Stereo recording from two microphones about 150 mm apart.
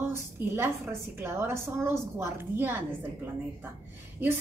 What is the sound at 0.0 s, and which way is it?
A woman's voice, 15° right (ahead or behind).